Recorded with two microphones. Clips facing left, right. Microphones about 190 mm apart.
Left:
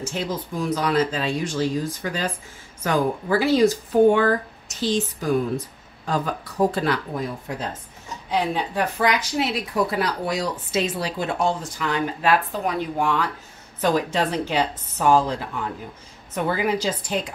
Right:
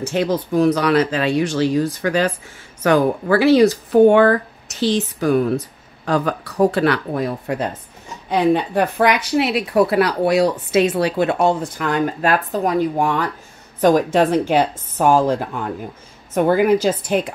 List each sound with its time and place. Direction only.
0.0 s a woman's voice: 65° right (ahead or behind)